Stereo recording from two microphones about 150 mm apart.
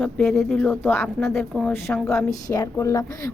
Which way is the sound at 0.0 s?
Centre (ahead or behind).